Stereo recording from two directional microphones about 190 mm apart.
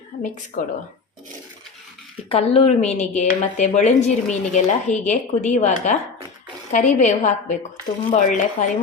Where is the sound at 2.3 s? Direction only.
30° left (ahead or behind).